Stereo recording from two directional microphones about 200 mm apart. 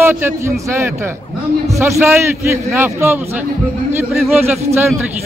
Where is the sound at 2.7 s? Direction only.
10° right (ahead or behind).